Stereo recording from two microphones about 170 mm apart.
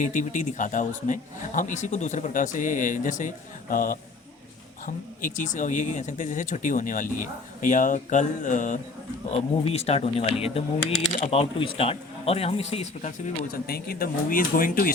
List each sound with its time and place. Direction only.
0.0 s a man's voice: 50° left (ahead or behind)
5.2 s a man's voice: 50° left (ahead or behind)
9.3 s speech: 35° left (ahead or behind)
13.7 s speech: 65° left (ahead or behind)